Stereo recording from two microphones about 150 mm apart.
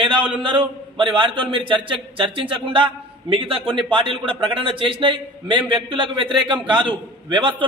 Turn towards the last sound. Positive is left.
turn(degrees=-35)  # may be behind; listen again after turning